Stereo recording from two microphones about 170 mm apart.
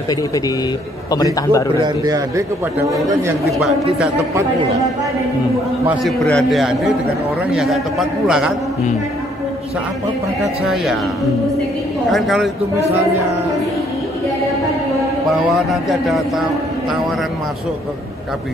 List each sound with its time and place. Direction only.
1.1 s a man's voice: 20° left (ahead or behind)
1.8 s speech: 20° right (ahead or behind)
3.4 s a man's voice: centre (ahead or behind)
6.0 s a man's voice: centre (ahead or behind)
10.4 s a man's voice: centre (ahead or behind)
12.1 s a man's voice: centre (ahead or behind)
15.2 s a man's voice: centre (ahead or behind)